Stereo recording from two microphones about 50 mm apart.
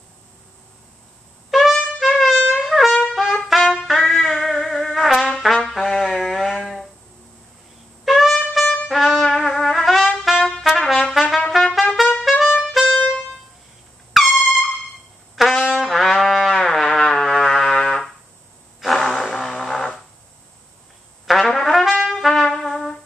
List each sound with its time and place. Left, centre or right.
1.5 s trumpet: centre
2.3 s trumpet: centre
3.8 s music: centre
5.3 s trumpet: centre
8.0 s trumpet: centre
8.6 s brass instrument: centre
8.9 s trumpet: centre
12.9 s music: left
14.1 s air horn: centre
15.3 s trumpet: centre
17.1 s music: centre
18.8 s a sound: centre
19.3 s vehicle: centre
21.3 s trumpet: centre